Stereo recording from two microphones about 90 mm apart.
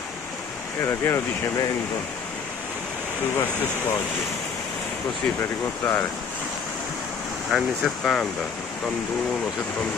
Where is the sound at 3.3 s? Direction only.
25° left (ahead or behind).